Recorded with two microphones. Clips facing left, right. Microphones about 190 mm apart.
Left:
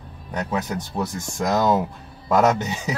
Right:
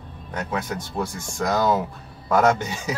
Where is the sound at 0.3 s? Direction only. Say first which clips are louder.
Left 2 dB; 15° left (ahead or behind).